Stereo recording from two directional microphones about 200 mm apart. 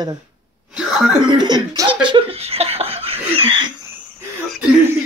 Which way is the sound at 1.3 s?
20° right (ahead or behind).